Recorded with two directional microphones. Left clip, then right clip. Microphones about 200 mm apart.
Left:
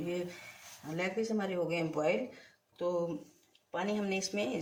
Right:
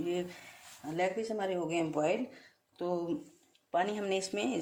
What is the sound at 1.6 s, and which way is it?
Speech, 45° right (ahead or behind).